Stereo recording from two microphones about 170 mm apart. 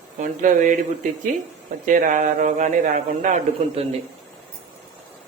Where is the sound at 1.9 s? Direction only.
50° right (ahead or behind).